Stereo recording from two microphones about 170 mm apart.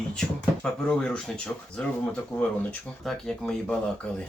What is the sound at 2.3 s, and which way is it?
Speech, 15° left (ahead or behind).